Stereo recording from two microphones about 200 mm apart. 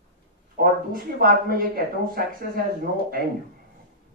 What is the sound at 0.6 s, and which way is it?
Speech, 45° right (ahead or behind).